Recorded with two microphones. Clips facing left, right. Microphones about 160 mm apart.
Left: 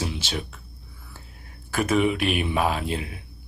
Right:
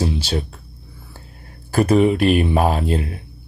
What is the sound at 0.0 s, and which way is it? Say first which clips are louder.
Speech: right 8 dB; 35° right (ahead or behind).